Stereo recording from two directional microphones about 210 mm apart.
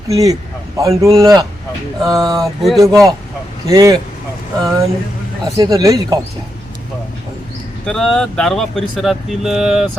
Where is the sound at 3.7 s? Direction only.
15° right (ahead or behind).